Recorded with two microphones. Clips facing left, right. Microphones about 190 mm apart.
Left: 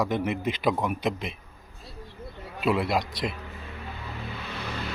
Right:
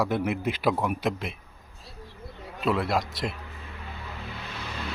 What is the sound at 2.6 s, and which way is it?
Speech, 5° left (ahead or behind).